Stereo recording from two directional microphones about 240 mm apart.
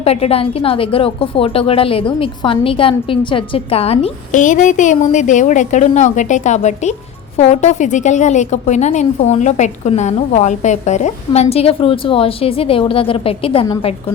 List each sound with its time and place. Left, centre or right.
0.0 s a woman's voice: left